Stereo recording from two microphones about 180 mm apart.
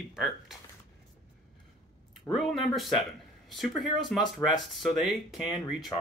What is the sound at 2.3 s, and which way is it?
Speech, centre (ahead or behind).